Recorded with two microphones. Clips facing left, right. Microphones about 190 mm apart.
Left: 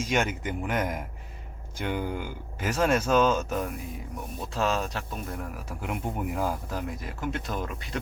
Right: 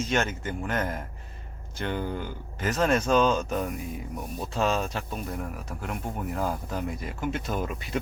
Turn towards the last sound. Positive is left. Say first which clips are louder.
# right 2 dB
turn(degrees=-5)  # may be behind; listen again after turning